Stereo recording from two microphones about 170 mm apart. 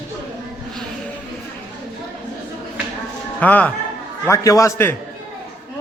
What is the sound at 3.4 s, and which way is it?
A man's voice, 10° left (ahead or behind).